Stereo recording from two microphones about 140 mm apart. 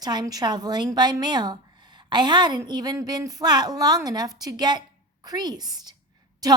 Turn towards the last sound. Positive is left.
turn(degrees=-25)  # may be behind; listen again after turning